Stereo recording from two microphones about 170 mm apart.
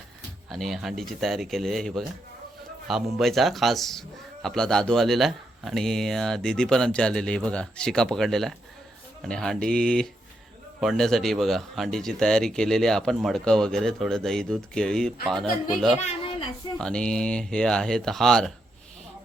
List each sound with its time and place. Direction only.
0.5 s a man's voice: centre (ahead or behind)
16.0 s a child's voice: 35° left (ahead or behind)
16.7 s a man's voice: 5° left (ahead or behind)